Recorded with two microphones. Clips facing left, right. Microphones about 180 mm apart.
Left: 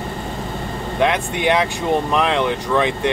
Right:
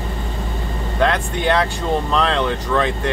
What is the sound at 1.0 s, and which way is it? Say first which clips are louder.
Speech: even; 15° left (ahead or behind).